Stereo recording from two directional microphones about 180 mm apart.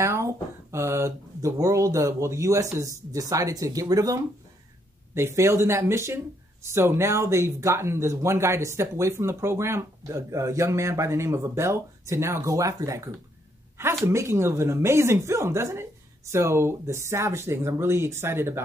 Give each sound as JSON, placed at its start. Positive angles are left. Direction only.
{"t": 0.0, "sound": "speech", "side_deg": -15}